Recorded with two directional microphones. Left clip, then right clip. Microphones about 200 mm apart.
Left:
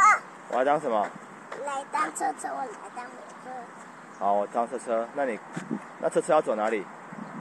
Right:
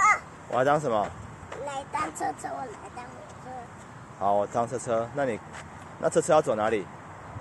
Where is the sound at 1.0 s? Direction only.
Centre (ahead or behind).